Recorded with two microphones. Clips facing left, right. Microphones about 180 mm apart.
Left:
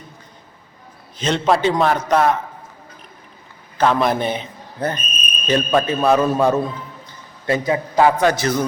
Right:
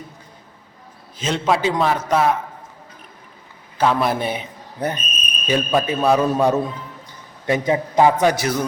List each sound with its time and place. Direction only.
1.2 s a man's voice: centre (ahead or behind)
3.8 s a man's voice: 5° right (ahead or behind)